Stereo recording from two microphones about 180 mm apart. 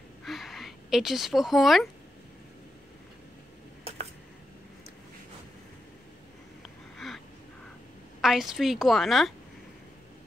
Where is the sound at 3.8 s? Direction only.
35° right (ahead or behind).